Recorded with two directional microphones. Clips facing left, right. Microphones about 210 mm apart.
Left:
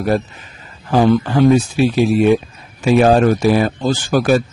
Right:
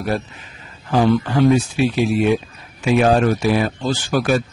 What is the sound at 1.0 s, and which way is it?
A man's voice, 40° left (ahead or behind).